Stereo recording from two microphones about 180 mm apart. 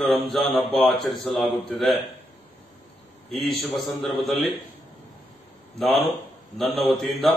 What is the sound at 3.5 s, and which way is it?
Speech, centre (ahead or behind).